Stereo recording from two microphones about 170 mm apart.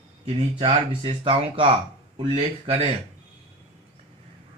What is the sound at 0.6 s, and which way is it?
Speech, 30° right (ahead or behind).